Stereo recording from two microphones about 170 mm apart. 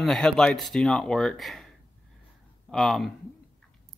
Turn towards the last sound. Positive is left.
turn(degrees=0)  # may be behind; listen again after turning